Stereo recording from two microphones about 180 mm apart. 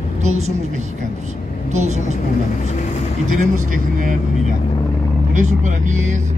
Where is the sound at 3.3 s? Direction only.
45° right (ahead or behind).